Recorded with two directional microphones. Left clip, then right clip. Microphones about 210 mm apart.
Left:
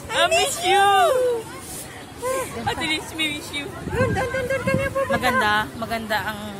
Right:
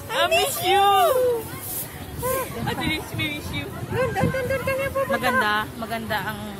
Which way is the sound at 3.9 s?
Centre (ahead or behind).